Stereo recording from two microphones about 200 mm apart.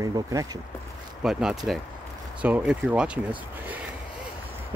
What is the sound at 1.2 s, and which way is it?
Speech, centre (ahead or behind).